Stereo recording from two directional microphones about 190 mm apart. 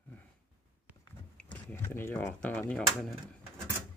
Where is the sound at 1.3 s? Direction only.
10° left (ahead or behind).